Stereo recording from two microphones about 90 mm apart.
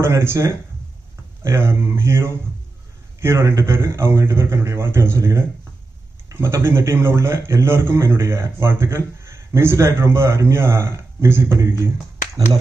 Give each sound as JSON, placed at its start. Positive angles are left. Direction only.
{"t": 0.0, "sound": "a man's voice", "side_deg": -30}